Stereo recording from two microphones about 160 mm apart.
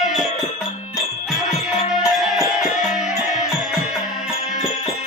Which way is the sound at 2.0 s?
Centre (ahead or behind).